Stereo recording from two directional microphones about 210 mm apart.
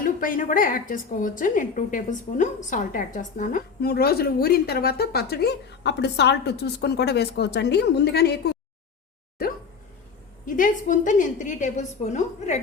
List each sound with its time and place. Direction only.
0.0 s a woman's voice: 40° left (ahead or behind)
10.4 s a woman's voice: 40° left (ahead or behind)